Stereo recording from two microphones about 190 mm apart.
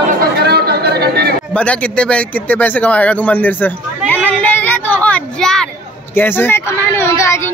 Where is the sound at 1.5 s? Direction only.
5° left (ahead or behind).